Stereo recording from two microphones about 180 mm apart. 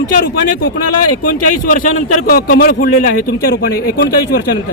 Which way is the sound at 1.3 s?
50° left (ahead or behind).